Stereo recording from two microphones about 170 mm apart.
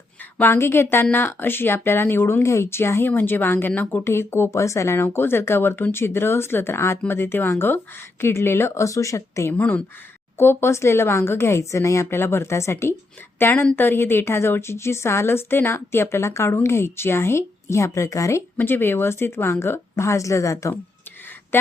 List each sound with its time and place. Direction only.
0.3 s speech: 15° left (ahead or behind)